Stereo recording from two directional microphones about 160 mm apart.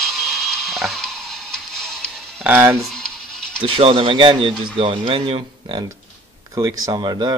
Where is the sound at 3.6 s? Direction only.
35° right (ahead or behind).